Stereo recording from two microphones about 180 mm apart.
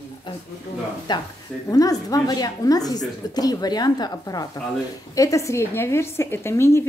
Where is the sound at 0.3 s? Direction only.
25° left (ahead or behind).